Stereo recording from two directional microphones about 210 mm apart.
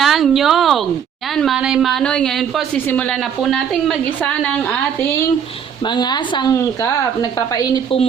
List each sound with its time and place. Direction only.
0.0 s a sound: centre (ahead or behind)
1.4 s speech: centre (ahead or behind)
5.8 s a woman's voice: 20° left (ahead or behind)